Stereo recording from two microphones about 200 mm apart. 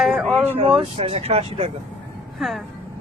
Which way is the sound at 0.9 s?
25° right (ahead or behind).